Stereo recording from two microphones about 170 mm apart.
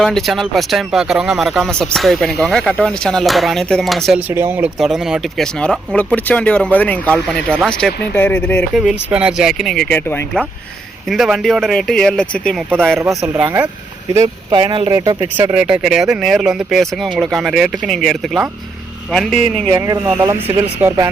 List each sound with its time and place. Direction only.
0.0 s speech: centre (ahead or behind)
4.3 s speech: 15° right (ahead or behind)
4.8 s speech: centre (ahead or behind)
8.7 s speech: 5° right (ahead or behind)
13.0 s speech: 15° right (ahead or behind)
14.1 s speech: 20° right (ahead or behind)
15.5 s speech: 5° right (ahead or behind)
19.7 s speech: 20° right (ahead or behind)
20.8 s speech: 10° right (ahead or behind)